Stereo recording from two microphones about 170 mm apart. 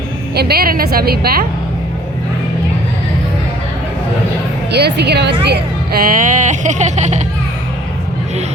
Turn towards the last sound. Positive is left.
turn(degrees=-45)  # may be behind; listen again after turning